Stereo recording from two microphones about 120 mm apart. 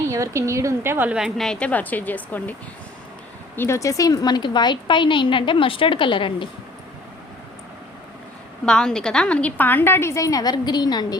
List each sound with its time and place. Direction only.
0.1 s a woman's voice: 25° right (ahead or behind)
1.1 s a woman's voice: centre (ahead or behind); by 6.5 s 45° left (ahead or behind)
8.6 s a woman's voice: 5° left (ahead or behind); by 11.2 s 35° left (ahead or behind)